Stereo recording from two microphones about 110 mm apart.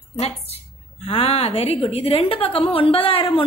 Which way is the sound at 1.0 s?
60° left (ahead or behind).